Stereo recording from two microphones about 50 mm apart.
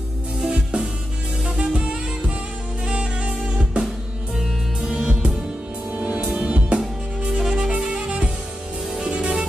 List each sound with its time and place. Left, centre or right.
0.5 s music: right
4.4 s music: centre
6.8 s music: centre